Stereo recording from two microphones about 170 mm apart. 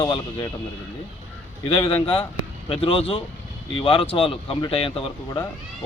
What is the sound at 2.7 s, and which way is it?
Speech, 30° left (ahead or behind).